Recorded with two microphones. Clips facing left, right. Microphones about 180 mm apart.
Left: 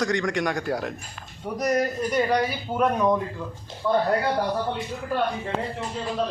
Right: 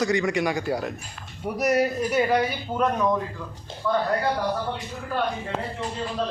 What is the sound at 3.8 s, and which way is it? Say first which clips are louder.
Speech: left 2 dB; 20° left (ahead or behind).